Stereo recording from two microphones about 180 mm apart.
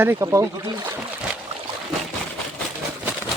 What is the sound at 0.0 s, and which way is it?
Speech, 15° right (ahead or behind).